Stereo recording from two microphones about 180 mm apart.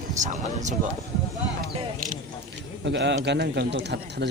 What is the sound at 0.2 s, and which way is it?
Speech, 40° right (ahead or behind).